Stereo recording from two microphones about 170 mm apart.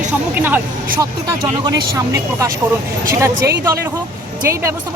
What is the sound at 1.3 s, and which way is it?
Speech, 20° right (ahead or behind).